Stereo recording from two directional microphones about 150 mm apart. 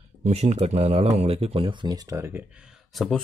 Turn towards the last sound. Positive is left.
turn(degrees=0)  # may be behind; listen again after turning